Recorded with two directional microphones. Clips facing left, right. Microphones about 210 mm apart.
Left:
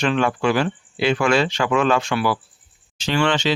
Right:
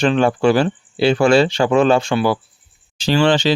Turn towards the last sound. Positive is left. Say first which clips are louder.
# right 5 dB
turn(degrees=-35)  # may be behind; listen again after turning